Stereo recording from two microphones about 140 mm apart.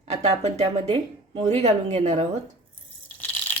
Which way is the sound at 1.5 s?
50° right (ahead or behind).